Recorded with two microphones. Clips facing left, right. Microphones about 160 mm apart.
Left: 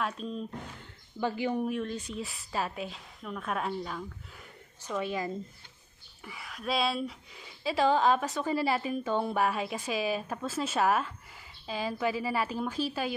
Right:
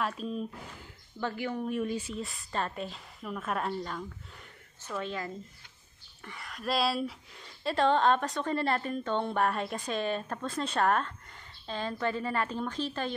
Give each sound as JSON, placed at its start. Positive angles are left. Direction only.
{"t": 0.0, "sound": "speech", "side_deg": 0}
{"t": 1.2, "sound": "speech", "side_deg": 15}
{"t": 1.7, "sound": "speech", "side_deg": -5}
{"t": 4.8, "sound": "speech", "side_deg": 15}